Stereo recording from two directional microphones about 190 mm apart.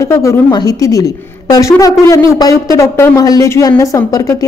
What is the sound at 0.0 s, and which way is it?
A woman's voice, 15° left (ahead or behind).